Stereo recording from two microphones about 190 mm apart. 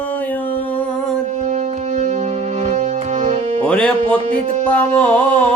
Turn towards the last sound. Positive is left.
turn(degrees=5)  # may be behind; listen again after turning